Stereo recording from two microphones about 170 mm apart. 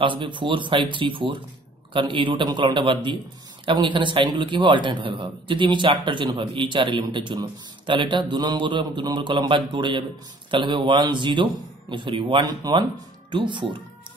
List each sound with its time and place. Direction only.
0.0 s a man's voice: 30° right (ahead or behind)